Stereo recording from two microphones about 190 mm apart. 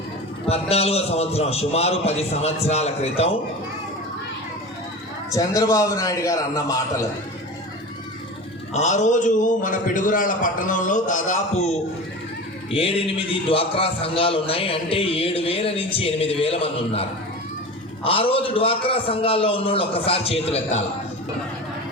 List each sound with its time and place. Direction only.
0.4 s a man's voice: 30° left (ahead or behind)
5.3 s a man's voice: 15° left (ahead or behind)
8.7 s a man's voice: 40° left (ahead or behind)